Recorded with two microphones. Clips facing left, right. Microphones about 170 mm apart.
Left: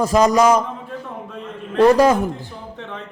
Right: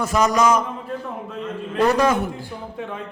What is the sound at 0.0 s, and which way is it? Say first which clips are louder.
Speech: left 4 dB; 35° left (ahead or behind).